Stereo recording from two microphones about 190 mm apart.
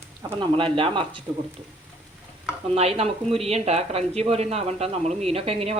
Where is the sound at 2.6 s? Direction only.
35° right (ahead or behind).